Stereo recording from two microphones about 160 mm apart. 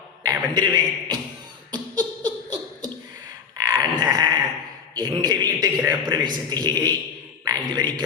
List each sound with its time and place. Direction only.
0.2 s a man's voice: 25° right (ahead or behind)
1.7 s beatboxing: 25° right (ahead or behind)
3.6 s a sound: 25° right (ahead or behind)
4.9 s a man's voice: 25° right (ahead or behind)